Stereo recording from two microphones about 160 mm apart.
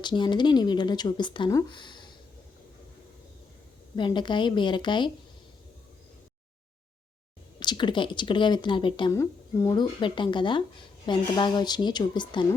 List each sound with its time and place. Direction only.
0.0 s speech: 30° left (ahead or behind)
3.9 s speech: 30° left (ahead or behind)
7.6 s speech: 30° left (ahead or behind)
9.1 s speech: 20° left (ahead or behind)